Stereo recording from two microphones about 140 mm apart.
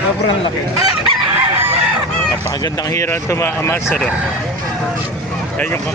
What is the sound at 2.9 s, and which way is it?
Speech, 20° left (ahead or behind).